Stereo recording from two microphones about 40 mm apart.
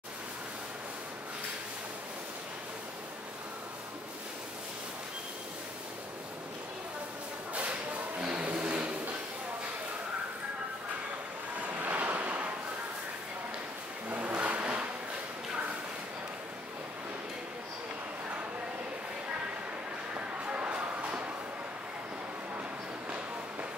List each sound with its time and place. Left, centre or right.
8.2 s music: right
8.5 s vehicle: right
11.8 s waves: right
14.0 s vehicle: right
20.2 s a sound: right